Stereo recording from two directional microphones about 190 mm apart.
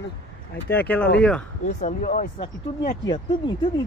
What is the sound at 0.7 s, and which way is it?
Speech, 10° left (ahead or behind).